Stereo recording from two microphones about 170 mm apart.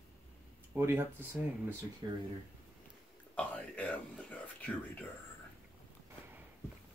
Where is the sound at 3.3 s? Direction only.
10° left (ahead or behind).